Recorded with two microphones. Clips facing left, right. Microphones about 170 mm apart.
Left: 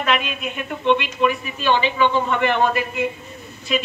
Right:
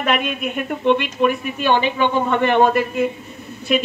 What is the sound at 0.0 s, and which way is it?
A woman's voice, 50° right (ahead or behind).